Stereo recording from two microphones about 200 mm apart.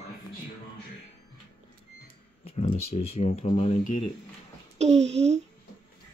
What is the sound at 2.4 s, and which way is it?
Speech, 30° left (ahead or behind).